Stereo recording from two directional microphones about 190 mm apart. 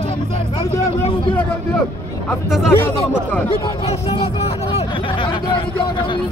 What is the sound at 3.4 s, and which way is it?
Speech, 30° left (ahead or behind).